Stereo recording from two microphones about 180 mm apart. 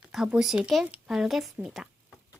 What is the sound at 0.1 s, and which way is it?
Speech, 5° right (ahead or behind).